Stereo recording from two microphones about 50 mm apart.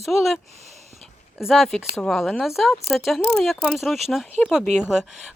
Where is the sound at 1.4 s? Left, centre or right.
Centre.